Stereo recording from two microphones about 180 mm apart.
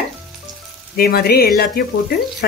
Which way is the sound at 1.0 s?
60° left (ahead or behind).